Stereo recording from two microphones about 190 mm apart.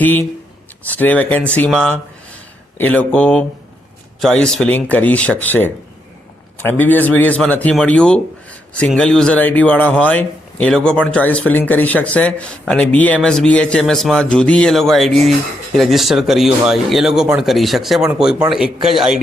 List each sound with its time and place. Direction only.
0.0 s a man's voice: 10° left (ahead or behind)